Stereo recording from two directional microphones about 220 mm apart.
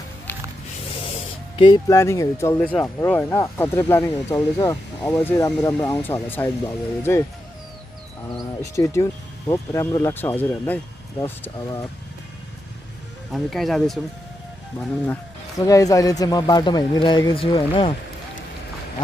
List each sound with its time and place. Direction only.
1.6 s speech: 15° left (ahead or behind)
8.4 s speech: 15° left (ahead or behind)
13.3 s speech: centre (ahead or behind)
15.6 s speech: 15° left (ahead or behind)